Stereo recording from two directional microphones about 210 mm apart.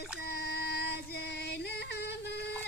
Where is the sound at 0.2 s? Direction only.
50° left (ahead or behind).